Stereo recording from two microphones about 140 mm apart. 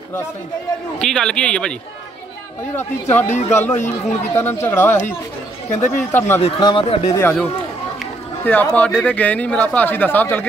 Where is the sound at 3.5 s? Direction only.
15° left (ahead or behind).